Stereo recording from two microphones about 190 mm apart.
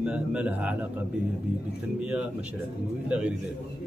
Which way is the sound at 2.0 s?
5° right (ahead or behind).